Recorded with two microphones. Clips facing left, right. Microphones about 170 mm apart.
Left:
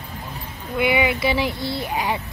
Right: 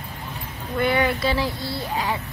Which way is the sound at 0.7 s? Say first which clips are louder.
Left 1 dB; 10° left (ahead or behind).